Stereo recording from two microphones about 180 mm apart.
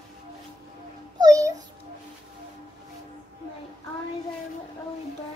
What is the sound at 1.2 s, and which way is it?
Babbling, 20° right (ahead or behind).